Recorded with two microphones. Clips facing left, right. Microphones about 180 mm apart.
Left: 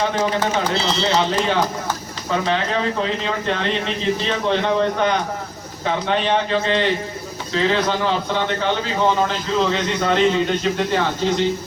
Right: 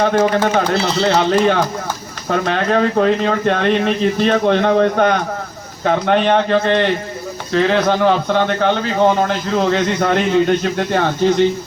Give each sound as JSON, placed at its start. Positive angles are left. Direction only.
{"t": 0.0, "sound": "a man's voice", "side_deg": -50}